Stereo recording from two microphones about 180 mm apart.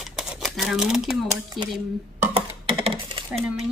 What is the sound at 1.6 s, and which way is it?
Speech, centre (ahead or behind).